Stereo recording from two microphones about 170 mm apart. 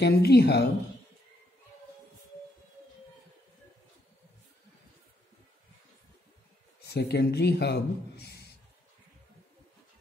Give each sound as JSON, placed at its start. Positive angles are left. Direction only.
{"t": 0.0, "sound": "speech", "side_deg": 75}
{"t": 6.8, "sound": "a man's voice", "side_deg": 75}